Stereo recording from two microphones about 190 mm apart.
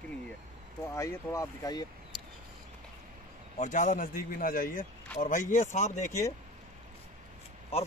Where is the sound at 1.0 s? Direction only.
15° left (ahead or behind).